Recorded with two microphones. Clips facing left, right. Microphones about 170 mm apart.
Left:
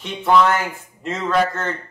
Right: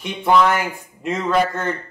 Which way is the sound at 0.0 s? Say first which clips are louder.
Even; 15° right (ahead or behind).